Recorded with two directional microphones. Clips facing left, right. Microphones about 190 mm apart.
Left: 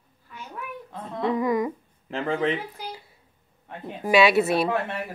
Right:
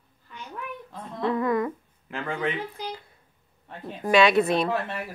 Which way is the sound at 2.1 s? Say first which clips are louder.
Left 4 dB; 30° left (ahead or behind).